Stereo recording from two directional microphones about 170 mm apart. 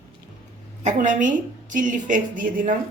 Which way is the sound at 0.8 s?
45° right (ahead or behind).